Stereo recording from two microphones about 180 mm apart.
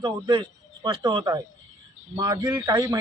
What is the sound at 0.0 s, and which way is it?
Speech, 25° right (ahead or behind).